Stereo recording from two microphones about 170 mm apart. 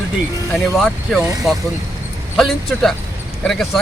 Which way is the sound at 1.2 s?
20° right (ahead or behind).